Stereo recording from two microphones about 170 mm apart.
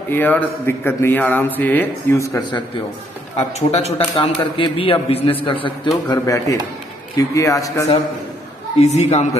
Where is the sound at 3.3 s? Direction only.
40° left (ahead or behind); by 7.9 s 20° left (ahead or behind).